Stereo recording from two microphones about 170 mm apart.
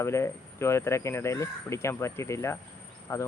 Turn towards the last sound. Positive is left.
turn(degrees=15)  # may be behind; listen again after turning